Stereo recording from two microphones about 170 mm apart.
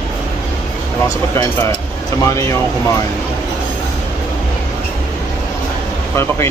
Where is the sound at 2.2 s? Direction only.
15° left (ahead or behind).